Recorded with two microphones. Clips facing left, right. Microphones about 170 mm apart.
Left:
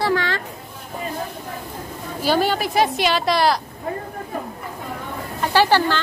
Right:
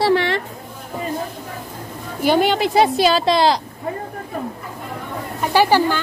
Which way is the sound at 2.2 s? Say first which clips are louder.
Right 3 dB; 20° right (ahead or behind).